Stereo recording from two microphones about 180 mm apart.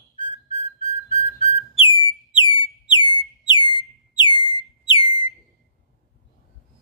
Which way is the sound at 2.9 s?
25° left (ahead or behind).